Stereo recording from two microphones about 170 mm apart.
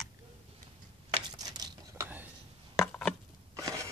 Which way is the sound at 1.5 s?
20° right (ahead or behind).